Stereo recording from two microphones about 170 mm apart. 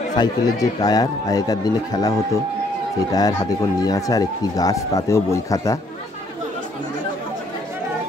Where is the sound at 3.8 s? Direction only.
20° left (ahead or behind).